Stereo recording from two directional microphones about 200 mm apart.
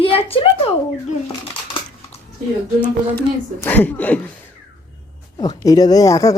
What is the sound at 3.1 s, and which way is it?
Speech, 10° left (ahead or behind).